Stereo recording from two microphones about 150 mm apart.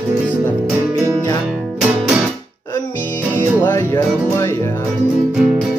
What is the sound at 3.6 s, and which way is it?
Music, 20° left (ahead or behind).